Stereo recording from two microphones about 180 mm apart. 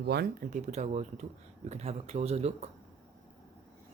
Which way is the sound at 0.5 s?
40° right (ahead or behind).